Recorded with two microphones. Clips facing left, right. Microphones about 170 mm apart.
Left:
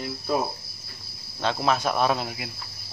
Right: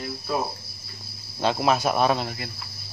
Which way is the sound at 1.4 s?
10° right (ahead or behind).